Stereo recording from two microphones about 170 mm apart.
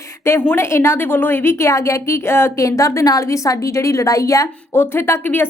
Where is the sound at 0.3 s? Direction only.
15° left (ahead or behind).